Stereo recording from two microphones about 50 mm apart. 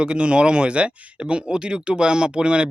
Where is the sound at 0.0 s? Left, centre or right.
Right.